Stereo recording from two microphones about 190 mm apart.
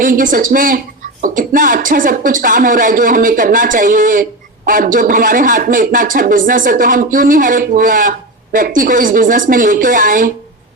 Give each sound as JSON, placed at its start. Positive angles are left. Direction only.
{"t": 0.0, "sound": "speech", "side_deg": -45}